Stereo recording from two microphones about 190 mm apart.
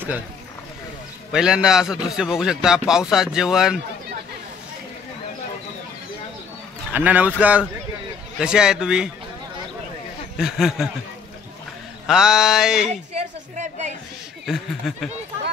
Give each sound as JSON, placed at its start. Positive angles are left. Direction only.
{"t": 1.3, "sound": "a man's voice", "side_deg": -5}
{"t": 6.9, "sound": "a man's voice", "side_deg": -10}
{"t": 10.3, "sound": "a man's voice", "side_deg": 0}
{"t": 12.1, "sound": "a man's voice", "side_deg": -5}
{"t": 12.8, "sound": "a woman's voice", "side_deg": -35}
{"t": 14.4, "sound": "a man's voice", "side_deg": 0}